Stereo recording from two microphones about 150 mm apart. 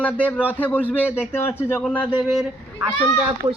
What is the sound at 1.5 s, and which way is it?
Speech, 15° left (ahead or behind).